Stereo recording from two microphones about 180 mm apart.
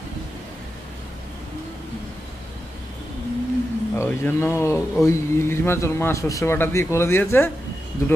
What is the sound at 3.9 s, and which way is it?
A man's voice, 15° left (ahead or behind).